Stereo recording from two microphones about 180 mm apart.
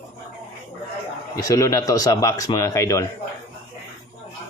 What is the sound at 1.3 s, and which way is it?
Speech, 20° left (ahead or behind).